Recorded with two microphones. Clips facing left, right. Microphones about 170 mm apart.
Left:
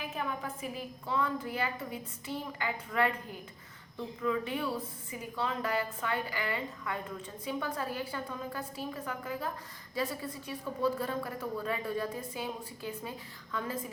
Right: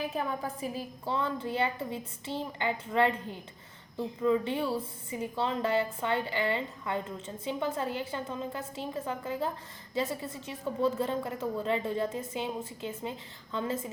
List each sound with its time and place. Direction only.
0.2 s a woman's voice: 35° right (ahead or behind)